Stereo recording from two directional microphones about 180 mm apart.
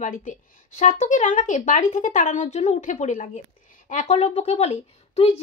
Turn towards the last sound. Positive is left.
turn(degrees=35)  # may be behind; listen again after turning